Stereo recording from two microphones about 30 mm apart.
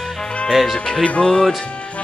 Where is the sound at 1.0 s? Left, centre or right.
Left.